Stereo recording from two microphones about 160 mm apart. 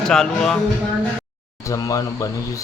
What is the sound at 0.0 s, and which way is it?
Speech, 5° left (ahead or behind).